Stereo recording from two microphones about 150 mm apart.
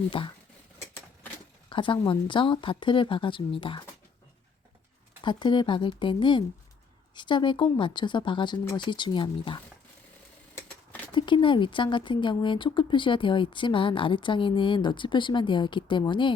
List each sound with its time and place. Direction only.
0.1 s speech: 35° left (ahead or behind)
0.8 s typewriter: 15° left (ahead or behind)
1.7 s speech: 35° left (ahead or behind)
5.2 s speech: 30° left (ahead or behind)
10.5 s a sound: 15° left (ahead or behind)
11.1 s speech: 30° left (ahead or behind)